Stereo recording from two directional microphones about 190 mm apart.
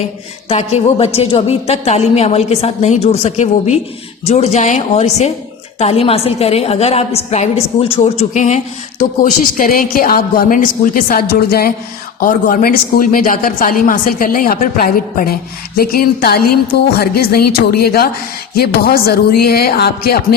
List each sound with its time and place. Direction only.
0.4 s a woman's voice: 35° left (ahead or behind); by 20.2 s 55° left (ahead or behind)